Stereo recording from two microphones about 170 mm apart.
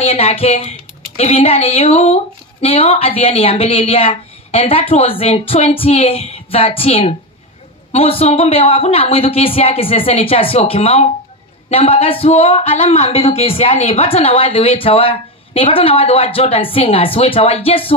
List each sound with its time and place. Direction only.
0.0 s a woman's voice: 35° left (ahead or behind)